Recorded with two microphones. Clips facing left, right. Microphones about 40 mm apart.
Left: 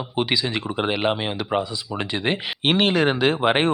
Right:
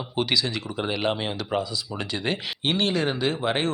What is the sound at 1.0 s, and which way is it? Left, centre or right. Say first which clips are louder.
Speech: left 3 dB; centre.